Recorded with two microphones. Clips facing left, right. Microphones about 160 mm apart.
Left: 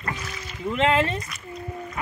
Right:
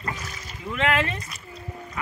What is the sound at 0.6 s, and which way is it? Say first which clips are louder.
Speech: left 3 dB; 25° left (ahead or behind).